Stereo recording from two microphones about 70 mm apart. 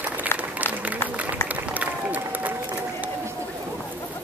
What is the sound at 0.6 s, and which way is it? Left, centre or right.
Run, right.